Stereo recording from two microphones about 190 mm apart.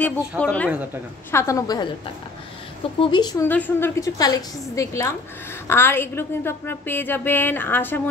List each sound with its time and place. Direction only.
0.4 s a woman's voice: 5° left (ahead or behind)
3.0 s speech: 25° left (ahead or behind)
3.4 s a woman's voice: 10° left (ahead or behind)